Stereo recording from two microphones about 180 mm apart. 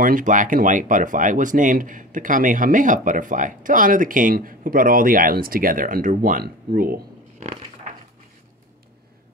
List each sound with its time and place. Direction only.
0.0 s speech: 45° right (ahead or behind)